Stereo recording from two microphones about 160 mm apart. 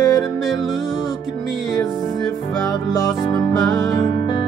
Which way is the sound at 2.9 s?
20° left (ahead or behind).